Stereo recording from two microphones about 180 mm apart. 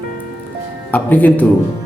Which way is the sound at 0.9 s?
10° left (ahead or behind).